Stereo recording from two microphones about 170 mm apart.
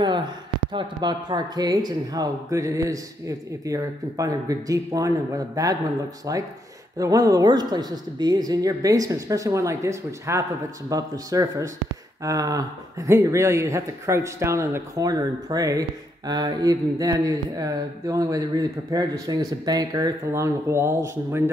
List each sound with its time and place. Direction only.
0.0 s speech: 25° right (ahead or behind)